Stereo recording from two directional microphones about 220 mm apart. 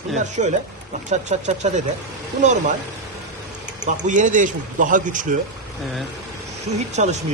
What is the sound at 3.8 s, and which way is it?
A man's voice, 35° right (ahead or behind).